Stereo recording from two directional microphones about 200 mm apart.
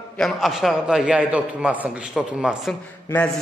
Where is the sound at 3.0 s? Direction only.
10° left (ahead or behind).